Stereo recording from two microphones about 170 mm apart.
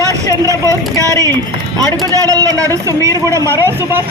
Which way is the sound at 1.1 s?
15° left (ahead or behind).